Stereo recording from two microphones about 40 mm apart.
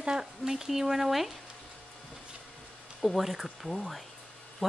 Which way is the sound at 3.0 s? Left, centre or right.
Centre.